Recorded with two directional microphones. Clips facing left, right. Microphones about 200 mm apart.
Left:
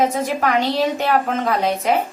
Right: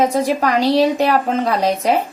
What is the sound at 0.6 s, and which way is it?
Speech, 35° right (ahead or behind).